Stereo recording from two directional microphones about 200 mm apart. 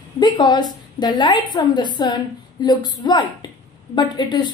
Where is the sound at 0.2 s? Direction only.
20° left (ahead or behind).